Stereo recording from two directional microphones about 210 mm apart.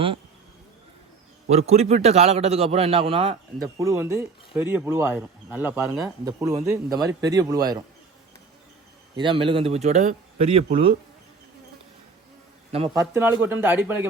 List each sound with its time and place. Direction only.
1.7 s a man's voice: 30° right (ahead or behind)
3.8 s speech: 15° right (ahead or behind)
9.1 s a man's voice: 25° right (ahead or behind)
12.7 s a man's voice: 25° right (ahead or behind)
13.0 s speech: 10° right (ahead or behind)